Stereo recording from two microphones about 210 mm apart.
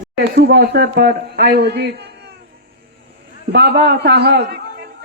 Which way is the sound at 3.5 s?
50° right (ahead or behind).